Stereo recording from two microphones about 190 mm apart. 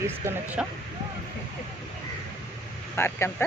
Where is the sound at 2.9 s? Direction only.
10° left (ahead or behind).